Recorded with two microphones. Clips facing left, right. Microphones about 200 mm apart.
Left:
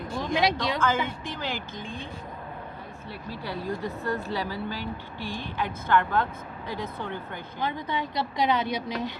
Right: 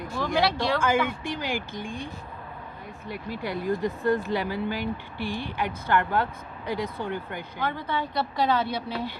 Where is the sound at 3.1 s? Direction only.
15° right (ahead or behind).